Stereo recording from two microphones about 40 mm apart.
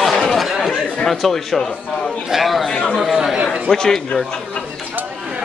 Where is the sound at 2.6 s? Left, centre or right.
Left.